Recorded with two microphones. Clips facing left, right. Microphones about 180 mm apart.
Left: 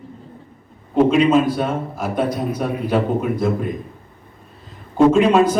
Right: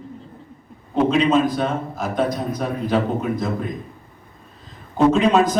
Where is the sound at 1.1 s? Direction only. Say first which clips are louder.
Left 2 dB; 5° left (ahead or behind).